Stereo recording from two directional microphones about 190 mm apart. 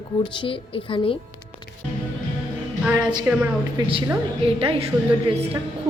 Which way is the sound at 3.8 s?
20° right (ahead or behind).